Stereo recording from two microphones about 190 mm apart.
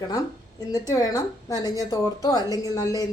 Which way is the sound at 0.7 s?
20° left (ahead or behind).